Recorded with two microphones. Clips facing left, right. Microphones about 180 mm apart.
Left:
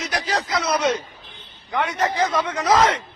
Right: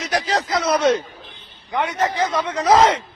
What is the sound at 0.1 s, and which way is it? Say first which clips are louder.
Speech: right 4 dB; 35° right (ahead or behind).